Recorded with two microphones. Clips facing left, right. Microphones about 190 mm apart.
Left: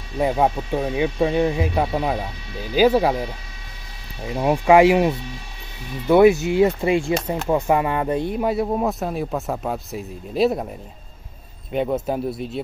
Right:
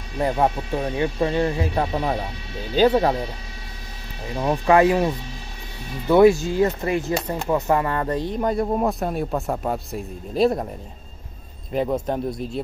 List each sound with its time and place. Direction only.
0.2 s speech: 10° left (ahead or behind)
4.3 s speech: 20° left (ahead or behind)
6.0 s speech: 15° left (ahead or behind)
11.7 s speech: centre (ahead or behind)